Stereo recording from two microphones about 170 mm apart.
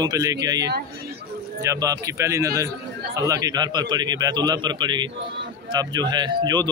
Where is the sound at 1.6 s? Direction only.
20° right (ahead or behind).